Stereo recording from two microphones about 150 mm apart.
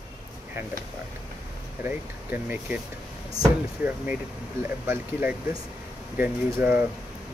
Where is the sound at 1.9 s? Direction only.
10° right (ahead or behind).